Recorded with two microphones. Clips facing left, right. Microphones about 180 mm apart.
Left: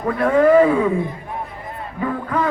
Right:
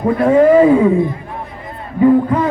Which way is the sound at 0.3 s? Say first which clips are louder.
Right 4 dB; 25° right (ahead or behind).